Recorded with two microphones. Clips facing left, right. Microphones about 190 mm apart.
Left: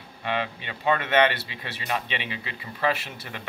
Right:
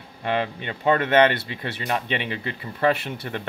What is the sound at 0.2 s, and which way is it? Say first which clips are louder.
Speech: right 4 dB; 50° right (ahead or behind).